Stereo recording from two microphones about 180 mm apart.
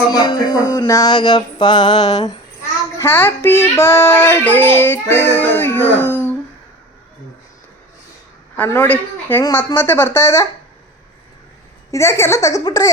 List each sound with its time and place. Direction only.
0.1 s mantra: 25° left (ahead or behind)
3.0 s child singing: 10° left (ahead or behind)
8.5 s child singing: 10° left (ahead or behind)
11.9 s child singing: 15° left (ahead or behind)
12.6 s mantra: 20° left (ahead or behind)